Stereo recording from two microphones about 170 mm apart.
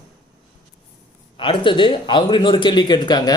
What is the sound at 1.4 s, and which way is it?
Speech, 30° left (ahead or behind).